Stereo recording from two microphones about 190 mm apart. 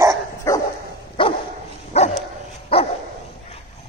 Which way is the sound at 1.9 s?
35° left (ahead or behind).